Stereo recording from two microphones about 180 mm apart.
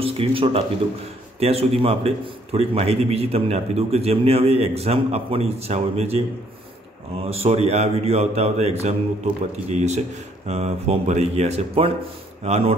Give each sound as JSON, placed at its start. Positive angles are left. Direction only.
{"t": 0.0, "sound": "a man's voice", "side_deg": -30}
{"t": 7.2, "sound": "a man's voice", "side_deg": -35}